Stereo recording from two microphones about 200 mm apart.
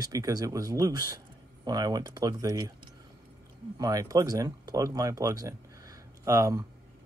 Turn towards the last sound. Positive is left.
turn(degrees=-15)  # may be behind; listen again after turning